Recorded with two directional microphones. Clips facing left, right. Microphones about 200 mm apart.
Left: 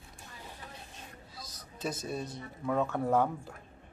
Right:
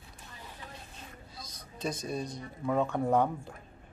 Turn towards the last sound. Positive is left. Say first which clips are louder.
# right 1 dB
turn(degrees=0)  # may be behind; listen again after turning